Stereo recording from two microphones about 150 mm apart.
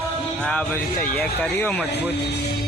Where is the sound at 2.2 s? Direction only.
90° left.